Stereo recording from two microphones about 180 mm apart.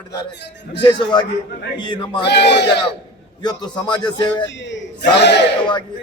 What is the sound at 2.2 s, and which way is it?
Speech, 70° left (ahead or behind).